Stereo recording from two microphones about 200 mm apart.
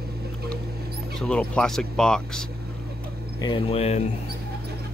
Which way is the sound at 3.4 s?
25° left (ahead or behind).